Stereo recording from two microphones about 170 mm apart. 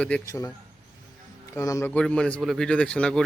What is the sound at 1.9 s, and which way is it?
Speech, 5° left (ahead or behind).